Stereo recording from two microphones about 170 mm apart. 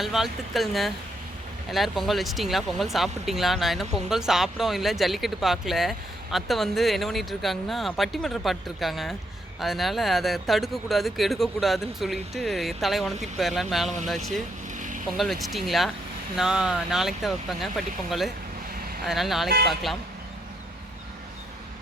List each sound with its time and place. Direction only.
0.0 s speech: centre (ahead or behind)
14.8 s vehicle: 50° right (ahead or behind)
15.0 s speech: centre (ahead or behind)